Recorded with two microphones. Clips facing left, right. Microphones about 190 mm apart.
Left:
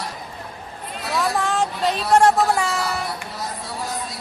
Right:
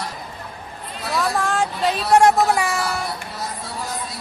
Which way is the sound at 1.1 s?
Centre (ahead or behind).